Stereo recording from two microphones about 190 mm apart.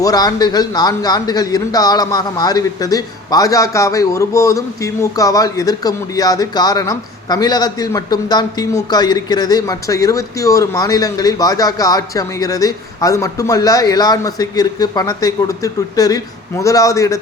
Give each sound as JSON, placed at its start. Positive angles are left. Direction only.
{"t": 0.0, "sound": "a man's voice", "side_deg": 20}